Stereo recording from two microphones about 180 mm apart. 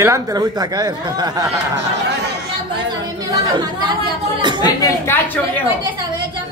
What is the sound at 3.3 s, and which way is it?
Speech, 25° right (ahead or behind).